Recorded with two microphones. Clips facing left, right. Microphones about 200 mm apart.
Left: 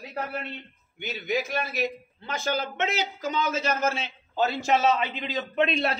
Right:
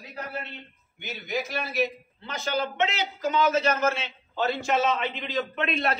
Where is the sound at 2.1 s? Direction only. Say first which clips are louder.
Even; 55° left (ahead or behind).